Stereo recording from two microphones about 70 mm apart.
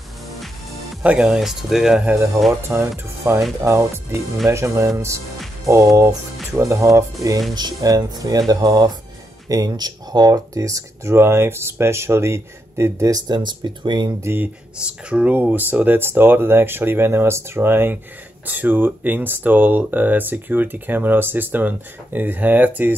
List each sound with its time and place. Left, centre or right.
1.0 s speech: centre
2.7 s speech: right
7.5 s speech: right
13.1 s speech: right
14.2 s speech: right
14.9 s speech: centre